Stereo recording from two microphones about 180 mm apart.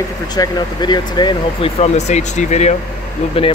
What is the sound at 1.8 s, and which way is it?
Speech, 40° left (ahead or behind).